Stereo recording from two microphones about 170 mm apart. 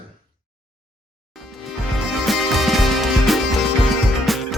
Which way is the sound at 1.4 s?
Centre (ahead or behind).